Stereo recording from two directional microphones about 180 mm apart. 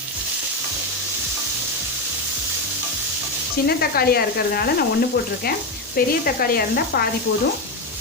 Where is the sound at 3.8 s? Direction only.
60° left (ahead or behind).